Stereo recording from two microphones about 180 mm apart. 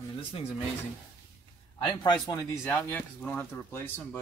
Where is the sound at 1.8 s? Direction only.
25° left (ahead or behind).